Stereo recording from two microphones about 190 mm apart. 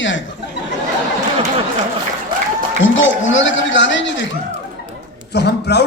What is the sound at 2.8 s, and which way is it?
Speech, 85° left.